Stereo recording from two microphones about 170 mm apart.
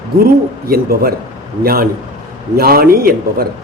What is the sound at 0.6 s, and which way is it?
A man's voice, 60° right (ahead or behind).